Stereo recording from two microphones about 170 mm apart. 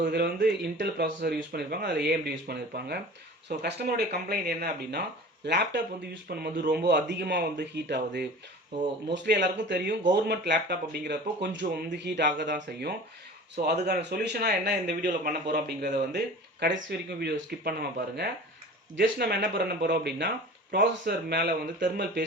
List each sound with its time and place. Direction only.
0.0 s speech: 70° right (ahead or behind)
5.5 s speech: 85° right
6.2 s speech: 65° right (ahead or behind)
6.8 s speech: 85° right
13.6 s speech: 75° right (ahead or behind)
18.9 s speech: 80° right